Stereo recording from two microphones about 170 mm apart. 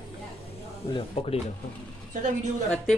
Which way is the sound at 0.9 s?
35° left (ahead or behind).